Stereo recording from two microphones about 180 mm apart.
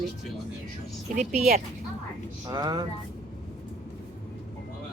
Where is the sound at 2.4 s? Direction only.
20° right (ahead or behind).